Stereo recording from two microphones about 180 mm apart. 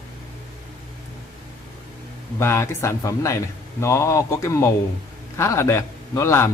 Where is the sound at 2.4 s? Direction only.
15° left (ahead or behind).